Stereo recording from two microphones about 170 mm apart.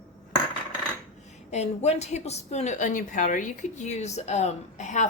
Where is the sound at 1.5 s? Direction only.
40° left (ahead or behind).